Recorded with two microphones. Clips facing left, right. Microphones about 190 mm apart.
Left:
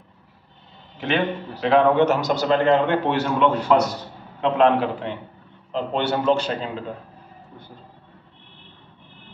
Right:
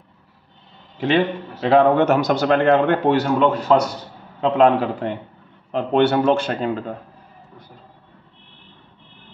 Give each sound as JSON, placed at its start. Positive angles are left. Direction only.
{"t": 0.9, "sound": "a man's voice", "side_deg": -35}
{"t": 3.1, "sound": "a man's voice", "side_deg": -40}
{"t": 5.7, "sound": "speech", "side_deg": -55}